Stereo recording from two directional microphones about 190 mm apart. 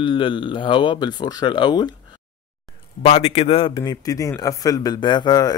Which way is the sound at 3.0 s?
35° left (ahead or behind).